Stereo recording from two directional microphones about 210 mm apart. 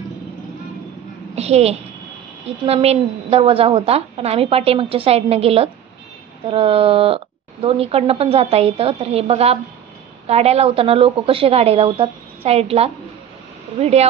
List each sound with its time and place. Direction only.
1.3 s speech: 30° right (ahead or behind)